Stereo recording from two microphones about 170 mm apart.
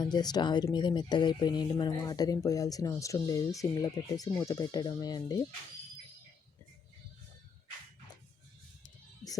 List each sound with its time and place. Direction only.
0.0 s speech: 25° left (ahead or behind)